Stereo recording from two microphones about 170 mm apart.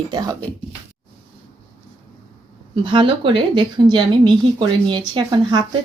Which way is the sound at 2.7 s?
30° right (ahead or behind).